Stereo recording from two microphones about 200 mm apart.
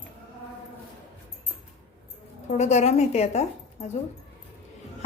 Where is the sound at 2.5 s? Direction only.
35° left (ahead or behind).